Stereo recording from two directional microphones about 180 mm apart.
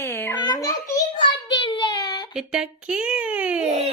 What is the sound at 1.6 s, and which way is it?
Child singing, 25° left (ahead or behind).